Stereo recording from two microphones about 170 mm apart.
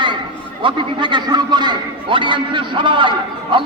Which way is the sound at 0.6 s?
30° right (ahead or behind).